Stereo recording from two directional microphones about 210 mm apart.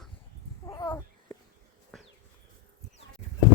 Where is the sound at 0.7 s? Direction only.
15° left (ahead or behind).